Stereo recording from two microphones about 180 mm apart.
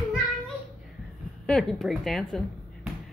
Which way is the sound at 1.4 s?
5° left (ahead or behind).